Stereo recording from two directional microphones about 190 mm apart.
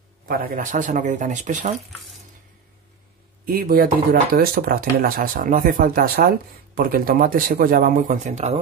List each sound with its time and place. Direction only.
0.3 s speech: 50° right (ahead or behind)
3.4 s speech: 50° right (ahead or behind)